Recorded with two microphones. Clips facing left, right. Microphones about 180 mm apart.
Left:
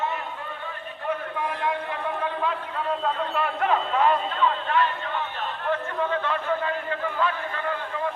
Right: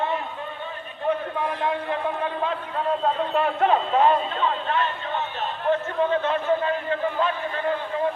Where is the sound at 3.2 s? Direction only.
25° right (ahead or behind).